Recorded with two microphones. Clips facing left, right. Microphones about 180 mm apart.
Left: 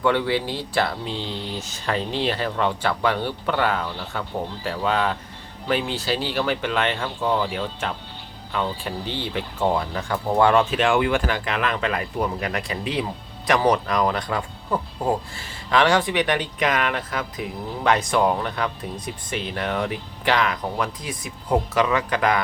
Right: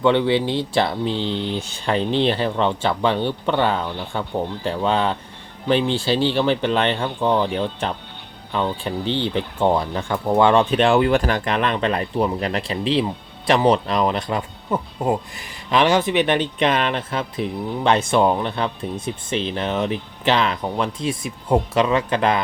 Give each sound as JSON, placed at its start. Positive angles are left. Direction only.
{"t": 0.0, "sound": "speech", "side_deg": -25}
{"t": 1.3, "sound": "speech", "side_deg": 5}
{"t": 1.7, "sound": "speech", "side_deg": -30}
{"t": 9.6, "sound": "speech", "side_deg": -30}